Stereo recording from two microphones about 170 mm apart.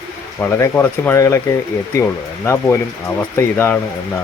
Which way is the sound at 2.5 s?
15° left (ahead or behind).